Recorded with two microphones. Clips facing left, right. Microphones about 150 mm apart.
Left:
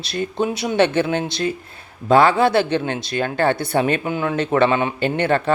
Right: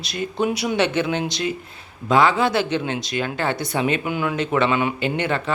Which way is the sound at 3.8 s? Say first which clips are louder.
Left 2 dB; 35° left (ahead or behind).